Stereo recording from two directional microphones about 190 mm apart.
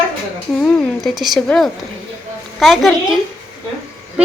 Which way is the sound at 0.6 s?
Centre (ahead or behind).